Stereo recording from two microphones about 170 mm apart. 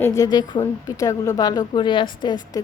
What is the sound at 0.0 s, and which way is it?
A woman's voice, 20° left (ahead or behind).